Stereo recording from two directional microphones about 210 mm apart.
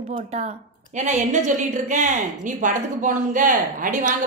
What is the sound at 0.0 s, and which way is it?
A woman's voice, 30° right (ahead or behind).